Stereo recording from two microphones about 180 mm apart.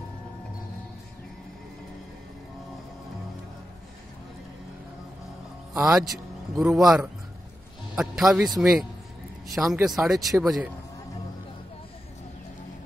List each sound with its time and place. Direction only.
5.8 s speech: 5° right (ahead or behind)